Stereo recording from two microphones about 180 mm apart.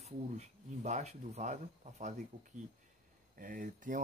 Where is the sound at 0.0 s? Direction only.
40° right (ahead or behind).